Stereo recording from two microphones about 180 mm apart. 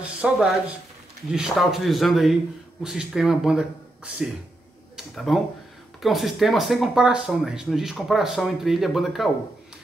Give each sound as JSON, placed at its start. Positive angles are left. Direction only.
{"t": 0.2, "sound": "speech", "side_deg": -5}